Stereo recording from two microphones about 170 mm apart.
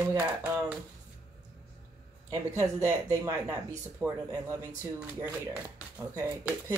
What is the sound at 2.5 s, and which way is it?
Speech, 20° right (ahead or behind).